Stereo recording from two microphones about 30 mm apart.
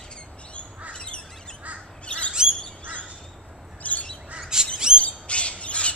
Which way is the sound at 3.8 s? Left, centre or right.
Left.